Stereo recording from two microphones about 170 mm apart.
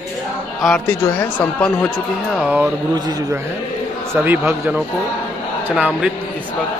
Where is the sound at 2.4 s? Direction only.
10° right (ahead or behind).